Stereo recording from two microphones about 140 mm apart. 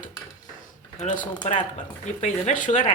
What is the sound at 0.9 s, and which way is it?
Speech, 60° left (ahead or behind).